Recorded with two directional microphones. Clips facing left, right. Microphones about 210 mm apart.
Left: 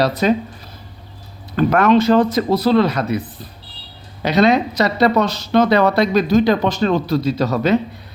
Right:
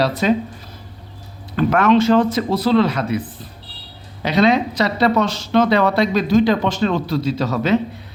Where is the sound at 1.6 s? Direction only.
40° left (ahead or behind).